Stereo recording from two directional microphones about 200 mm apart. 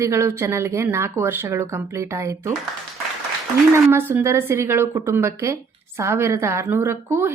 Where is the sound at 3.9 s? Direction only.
10° right (ahead or behind).